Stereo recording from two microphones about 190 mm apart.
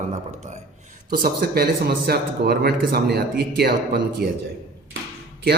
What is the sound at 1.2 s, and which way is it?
Speech, 55° right (ahead or behind).